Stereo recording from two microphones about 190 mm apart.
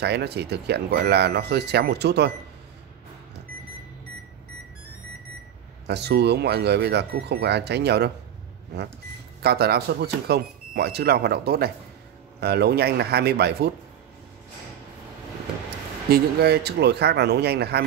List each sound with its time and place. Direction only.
0.0 s speech: 60° right (ahead or behind)
5.9 s speech: 60° right (ahead or behind)
9.4 s speech: 55° right (ahead or behind)
16.1 s speech: 55° right (ahead or behind)